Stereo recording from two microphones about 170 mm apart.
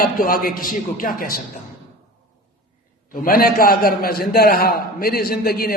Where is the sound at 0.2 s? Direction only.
60° left (ahead or behind).